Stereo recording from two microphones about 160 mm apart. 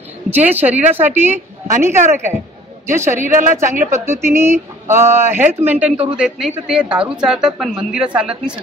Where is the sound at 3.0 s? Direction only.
50° right (ahead or behind).